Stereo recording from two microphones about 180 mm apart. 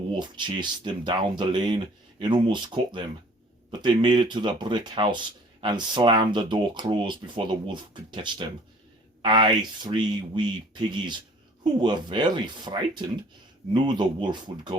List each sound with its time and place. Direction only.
0.1 s speech: 25° right (ahead or behind)